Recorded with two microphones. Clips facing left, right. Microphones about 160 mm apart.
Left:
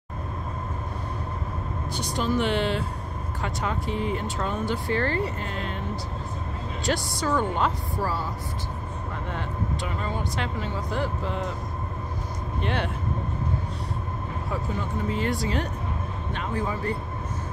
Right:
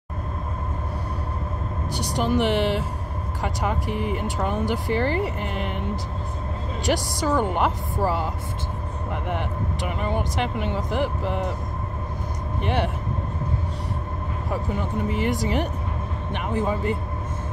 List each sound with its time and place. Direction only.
1.9 s speech: 15° right (ahead or behind)
6.8 s speech: 15° right (ahead or behind)
12.6 s speech: 15° right (ahead or behind)
14.5 s speech: 15° right (ahead or behind)